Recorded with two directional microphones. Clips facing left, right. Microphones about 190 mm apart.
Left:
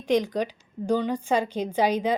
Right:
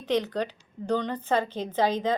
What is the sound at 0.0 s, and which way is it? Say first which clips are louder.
A woman's voice: left 3 dB; 10° left (ahead or behind).